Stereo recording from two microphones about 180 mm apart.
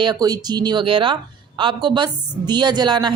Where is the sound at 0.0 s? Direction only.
20° right (ahead or behind).